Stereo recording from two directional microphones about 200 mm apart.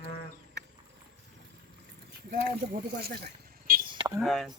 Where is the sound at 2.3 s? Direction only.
50° right (ahead or behind).